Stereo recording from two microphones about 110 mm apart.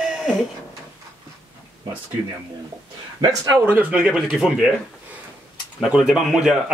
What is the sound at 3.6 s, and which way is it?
Speech, 15° right (ahead or behind).